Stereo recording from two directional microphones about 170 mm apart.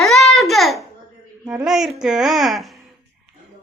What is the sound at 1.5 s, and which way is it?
A child's voice, 5° right (ahead or behind).